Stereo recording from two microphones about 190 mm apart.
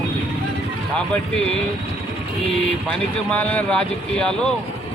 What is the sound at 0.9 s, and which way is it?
Speech, 5° left (ahead or behind).